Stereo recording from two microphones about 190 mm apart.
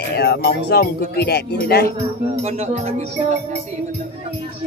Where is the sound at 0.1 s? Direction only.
55° left (ahead or behind).